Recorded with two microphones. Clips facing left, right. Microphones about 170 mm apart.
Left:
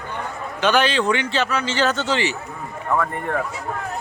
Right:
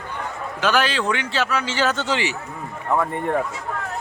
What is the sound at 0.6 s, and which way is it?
Speech, 5° right (ahead or behind).